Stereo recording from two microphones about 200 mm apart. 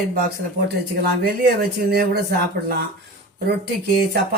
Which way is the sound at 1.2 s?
50° right (ahead or behind).